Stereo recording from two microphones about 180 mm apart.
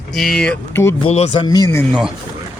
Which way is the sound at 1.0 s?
35° left (ahead or behind).